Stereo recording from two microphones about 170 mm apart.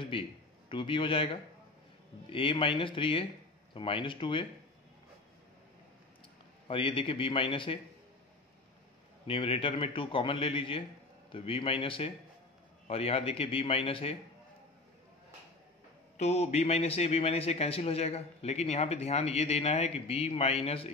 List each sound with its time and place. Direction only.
0.1 s a man's voice: 30° left (ahead or behind)
6.7 s a man's voice: 30° left (ahead or behind)
9.3 s a man's voice: 35° left (ahead or behind)
16.2 s a man's voice: 40° left (ahead or behind)